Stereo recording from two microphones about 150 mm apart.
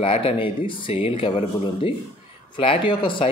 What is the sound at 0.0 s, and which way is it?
Speech, 40° left (ahead or behind).